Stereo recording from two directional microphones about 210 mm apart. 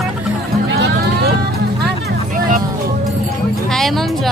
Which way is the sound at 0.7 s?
55° right (ahead or behind).